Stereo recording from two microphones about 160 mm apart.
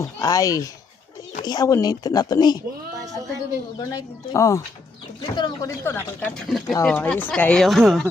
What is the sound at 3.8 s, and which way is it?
Speech, 20° left (ahead or behind).